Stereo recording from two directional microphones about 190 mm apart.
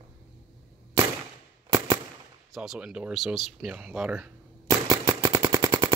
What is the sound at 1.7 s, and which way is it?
Gunshot, 20° right (ahead or behind).